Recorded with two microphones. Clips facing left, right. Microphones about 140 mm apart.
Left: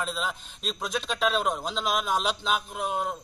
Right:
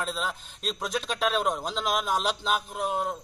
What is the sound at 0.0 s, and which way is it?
A man's voice, centre (ahead or behind).